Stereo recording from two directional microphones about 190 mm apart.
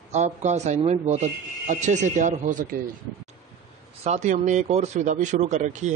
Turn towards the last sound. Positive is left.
turn(degrees=-40)  # may be behind; listen again after turning